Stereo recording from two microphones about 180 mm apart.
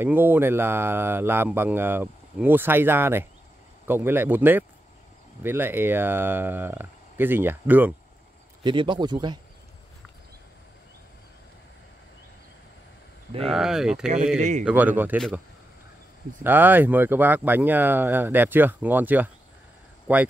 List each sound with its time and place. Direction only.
0.0 s speech: 10° right (ahead or behind)
8.6 s speech: 25° right (ahead or behind)
13.5 s speech: 5° right (ahead or behind)
16.4 s speech: 10° right (ahead or behind)